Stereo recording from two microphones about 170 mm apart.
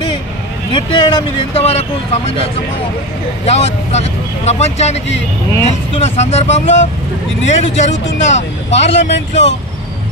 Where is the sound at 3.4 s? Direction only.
40° left (ahead or behind).